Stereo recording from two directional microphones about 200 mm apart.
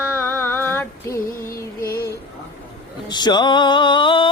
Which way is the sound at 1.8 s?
50° left (ahead or behind).